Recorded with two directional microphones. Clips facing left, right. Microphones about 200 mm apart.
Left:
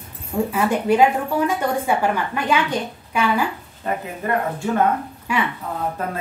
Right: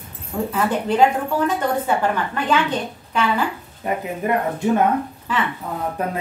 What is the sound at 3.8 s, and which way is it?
Speech, 15° right (ahead or behind).